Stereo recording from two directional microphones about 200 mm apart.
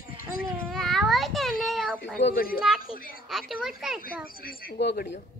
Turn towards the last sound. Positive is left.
turn(degrees=55)  # may be behind; listen again after turning